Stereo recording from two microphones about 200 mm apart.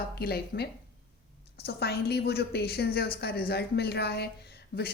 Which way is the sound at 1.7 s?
55° left (ahead or behind).